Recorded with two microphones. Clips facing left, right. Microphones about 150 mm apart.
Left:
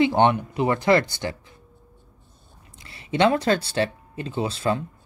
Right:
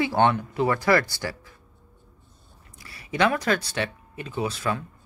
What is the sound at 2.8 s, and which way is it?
Speech, 25° left (ahead or behind).